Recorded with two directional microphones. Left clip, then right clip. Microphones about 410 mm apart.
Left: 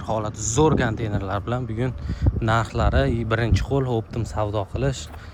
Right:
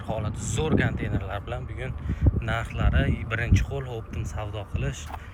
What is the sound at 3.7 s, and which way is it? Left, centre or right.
Speech, left.